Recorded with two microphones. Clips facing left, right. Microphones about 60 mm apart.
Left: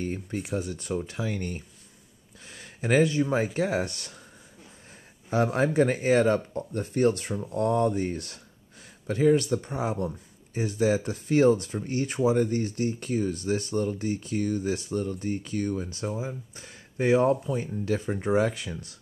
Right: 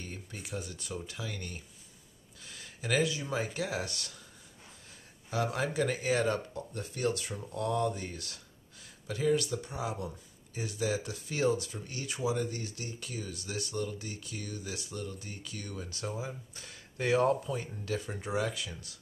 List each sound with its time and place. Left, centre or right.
0.0 s speech: left
5.3 s speech: left